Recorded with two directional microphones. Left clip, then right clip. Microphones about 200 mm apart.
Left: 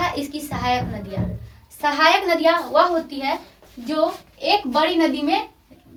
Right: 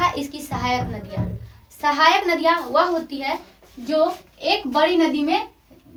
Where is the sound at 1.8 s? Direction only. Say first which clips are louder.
Even; 15° right (ahead or behind).